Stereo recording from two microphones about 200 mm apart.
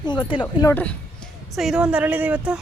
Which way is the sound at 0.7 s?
5° left (ahead or behind).